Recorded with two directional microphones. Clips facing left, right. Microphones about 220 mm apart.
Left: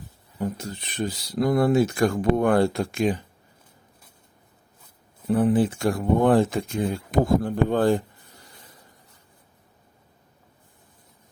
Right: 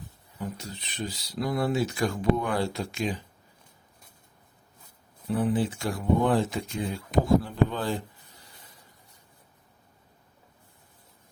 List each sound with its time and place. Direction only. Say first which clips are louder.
0.3 s speech: left 7 dB; 50° left (ahead or behind)
5.3 s speech: left 6 dB; 50° left (ahead or behind)